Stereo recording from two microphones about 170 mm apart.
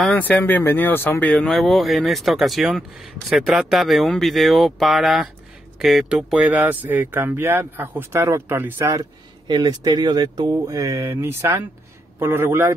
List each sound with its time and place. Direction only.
0.0 s speech: 10° left (ahead or behind); by 12.7 s 15° right (ahead or behind)